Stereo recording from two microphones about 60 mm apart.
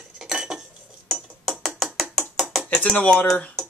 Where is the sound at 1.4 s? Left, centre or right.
Centre.